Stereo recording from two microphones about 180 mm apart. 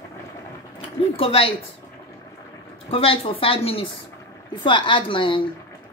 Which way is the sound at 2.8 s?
30° left (ahead or behind).